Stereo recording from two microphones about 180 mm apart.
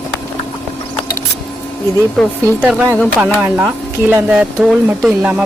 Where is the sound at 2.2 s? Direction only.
Centre (ahead or behind).